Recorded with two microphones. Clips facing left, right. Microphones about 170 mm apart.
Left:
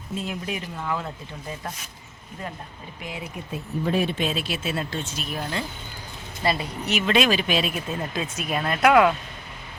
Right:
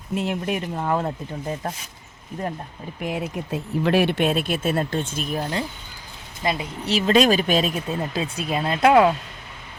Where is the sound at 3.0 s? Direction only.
60° right (ahead or behind); by 5.6 s 40° right (ahead or behind).